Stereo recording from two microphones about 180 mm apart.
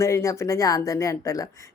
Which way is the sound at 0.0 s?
15° left (ahead or behind).